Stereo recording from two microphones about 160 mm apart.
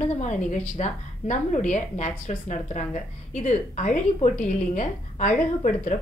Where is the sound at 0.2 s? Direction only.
50° left (ahead or behind).